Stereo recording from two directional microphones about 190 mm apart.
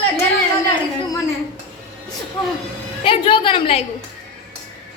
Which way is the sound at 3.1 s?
25° left (ahead or behind).